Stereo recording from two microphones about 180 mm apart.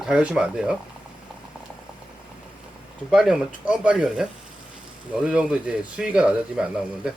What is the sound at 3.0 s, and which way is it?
Speech, centre (ahead or behind).